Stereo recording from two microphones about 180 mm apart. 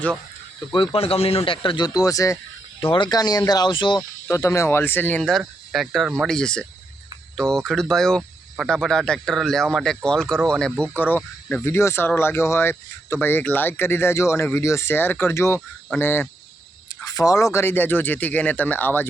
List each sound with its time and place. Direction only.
0.7 s speech: 30° left (ahead or behind)
4.4 s speech: 15° left (ahead or behind)